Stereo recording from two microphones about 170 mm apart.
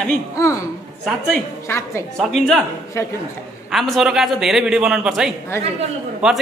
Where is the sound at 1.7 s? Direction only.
15° left (ahead or behind).